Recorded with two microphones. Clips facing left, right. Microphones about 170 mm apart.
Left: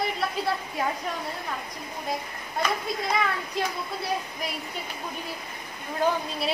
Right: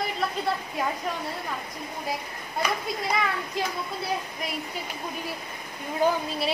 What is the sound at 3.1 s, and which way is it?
Speech, centre (ahead or behind).